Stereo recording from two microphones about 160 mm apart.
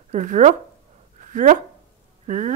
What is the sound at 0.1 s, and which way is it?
A woman's voice, 50° right (ahead or behind).